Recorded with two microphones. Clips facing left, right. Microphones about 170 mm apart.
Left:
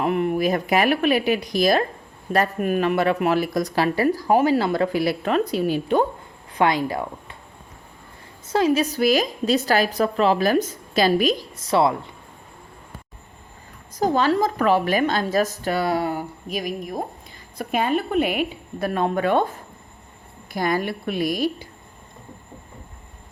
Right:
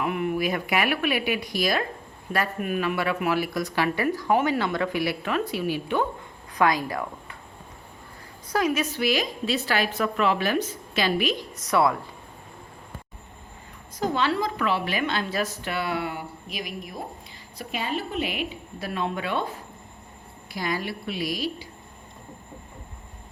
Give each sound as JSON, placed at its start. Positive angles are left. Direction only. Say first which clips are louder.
{"t": 0.0, "sound": "a woman's voice", "louder": "left 5 dB", "side_deg": 35}
{"t": 6.6, "sound": "speech", "louder": "left 3 dB", "side_deg": 25}
{"t": 8.4, "sound": "a woman's voice", "louder": "left 5 dB", "side_deg": 30}
{"t": 14.0, "sound": "a woman's voice", "louder": "left 5 dB", "side_deg": 40}